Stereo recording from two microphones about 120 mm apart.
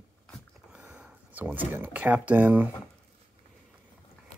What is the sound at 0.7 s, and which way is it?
Speech, 10° right (ahead or behind).